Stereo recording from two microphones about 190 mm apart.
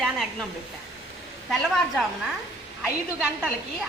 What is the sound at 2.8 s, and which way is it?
Speech, 5° right (ahead or behind).